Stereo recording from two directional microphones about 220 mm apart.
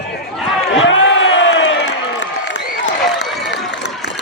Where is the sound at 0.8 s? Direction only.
60° left (ahead or behind).